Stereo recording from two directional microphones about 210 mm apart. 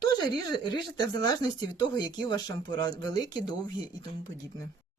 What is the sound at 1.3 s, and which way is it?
Speech, 20° left (ahead or behind).